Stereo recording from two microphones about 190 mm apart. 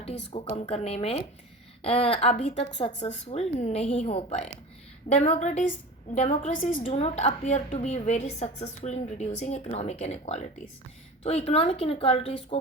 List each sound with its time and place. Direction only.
0.3 s a woman's voice: 30° left (ahead or behind)